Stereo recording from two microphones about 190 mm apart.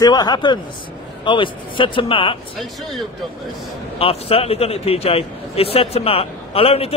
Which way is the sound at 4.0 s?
30° left (ahead or behind).